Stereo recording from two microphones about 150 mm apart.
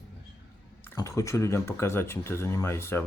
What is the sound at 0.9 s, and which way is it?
Speech, 20° left (ahead or behind).